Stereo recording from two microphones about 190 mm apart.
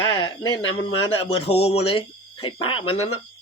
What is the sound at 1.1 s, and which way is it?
Speech, 30° left (ahead or behind).